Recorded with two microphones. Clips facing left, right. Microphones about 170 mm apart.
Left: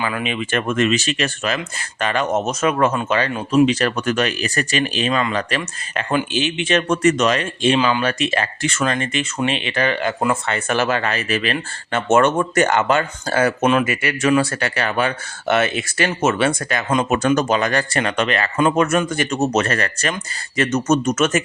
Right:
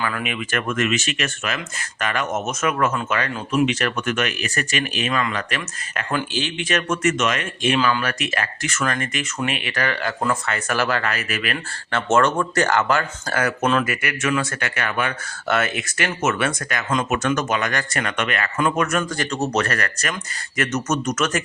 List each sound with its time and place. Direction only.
0.0 s speech: 25° left (ahead or behind)